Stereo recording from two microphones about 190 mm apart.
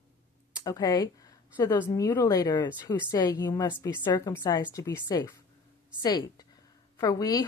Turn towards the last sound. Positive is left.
turn(degrees=20)  # may be behind; listen again after turning